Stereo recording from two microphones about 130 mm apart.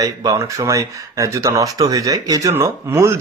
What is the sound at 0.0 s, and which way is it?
Speech, 25° right (ahead or behind).